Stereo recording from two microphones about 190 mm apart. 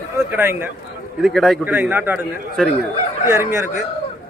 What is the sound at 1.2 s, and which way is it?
Speech, centre (ahead or behind).